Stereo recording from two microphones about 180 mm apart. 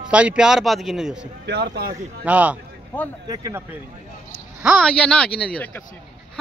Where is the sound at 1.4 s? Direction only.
70° right (ahead or behind).